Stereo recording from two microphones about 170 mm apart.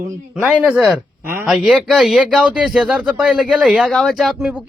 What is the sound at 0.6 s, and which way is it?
Speech, 5° right (ahead or behind).